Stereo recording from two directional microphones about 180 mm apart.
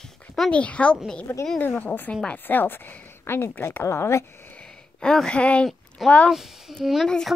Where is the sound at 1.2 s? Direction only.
15° left (ahead or behind).